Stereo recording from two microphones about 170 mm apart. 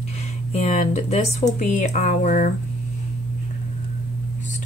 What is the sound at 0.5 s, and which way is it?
Speech, 40° left (ahead or behind).